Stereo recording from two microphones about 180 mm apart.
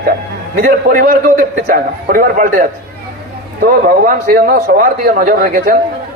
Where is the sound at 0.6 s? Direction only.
50° right (ahead or behind).